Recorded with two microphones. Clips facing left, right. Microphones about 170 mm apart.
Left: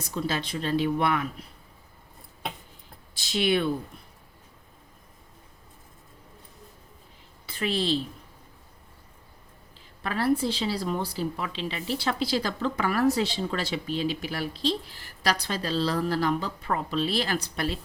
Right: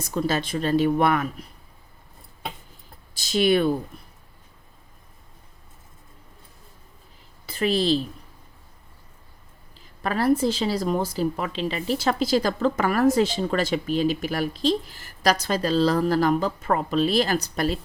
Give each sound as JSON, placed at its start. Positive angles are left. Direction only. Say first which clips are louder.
{"t": 0.1, "sound": "speech", "louder": "right 5 dB", "side_deg": -45}
{"t": 3.2, "sound": "speech", "louder": "right 5 dB", "side_deg": -40}
{"t": 7.4, "sound": "a woman's voice", "louder": "right 5 dB", "side_deg": -40}
{"t": 10.0, "sound": "speech", "louder": "right 4 dB", "side_deg": -40}